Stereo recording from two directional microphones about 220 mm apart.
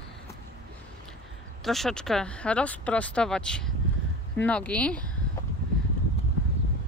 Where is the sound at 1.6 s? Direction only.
Centre (ahead or behind).